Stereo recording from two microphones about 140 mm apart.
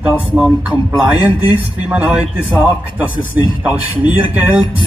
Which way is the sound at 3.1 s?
30° left (ahead or behind).